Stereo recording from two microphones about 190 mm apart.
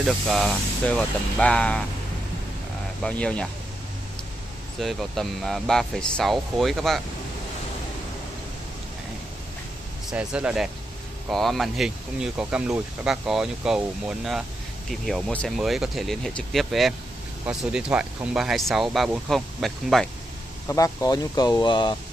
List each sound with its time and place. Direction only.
0.0 s speech: centre (ahead or behind)
3.0 s speech: 5° left (ahead or behind)
4.7 s speech: centre (ahead or behind)
10.1 s speech: 5° right (ahead or behind)
20.6 s speech: 15° left (ahead or behind)